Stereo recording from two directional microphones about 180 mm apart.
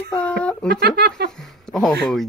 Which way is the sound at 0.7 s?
65° right (ahead or behind).